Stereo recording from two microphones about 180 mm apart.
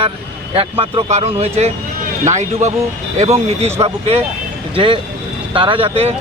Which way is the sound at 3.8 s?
35° right (ahead or behind).